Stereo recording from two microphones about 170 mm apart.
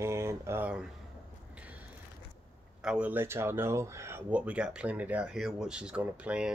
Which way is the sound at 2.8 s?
5° right (ahead or behind).